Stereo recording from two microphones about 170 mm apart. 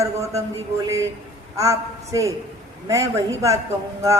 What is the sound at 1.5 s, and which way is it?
A woman's voice, 20° right (ahead or behind).